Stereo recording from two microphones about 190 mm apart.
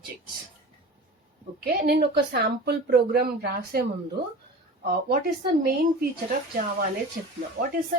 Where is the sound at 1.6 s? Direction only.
55° right (ahead or behind).